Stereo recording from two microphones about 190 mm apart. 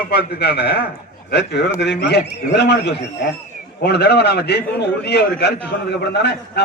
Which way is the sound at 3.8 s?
60° left (ahead or behind).